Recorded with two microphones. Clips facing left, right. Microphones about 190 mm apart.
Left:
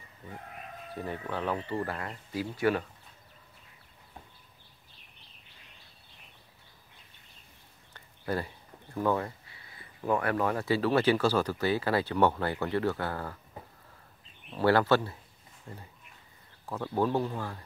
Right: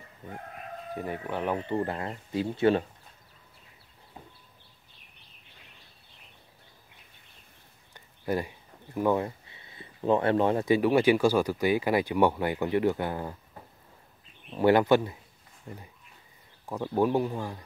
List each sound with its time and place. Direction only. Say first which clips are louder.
0.9 s speech: right 2 dB; 15° right (ahead or behind)
7.9 s speech: right 3 dB; 15° right (ahead or behind)
14.5 s speech: right 3 dB; 15° right (ahead or behind)